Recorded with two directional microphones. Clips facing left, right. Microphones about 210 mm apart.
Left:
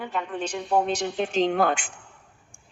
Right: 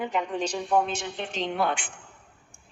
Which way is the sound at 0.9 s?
40° left (ahead or behind).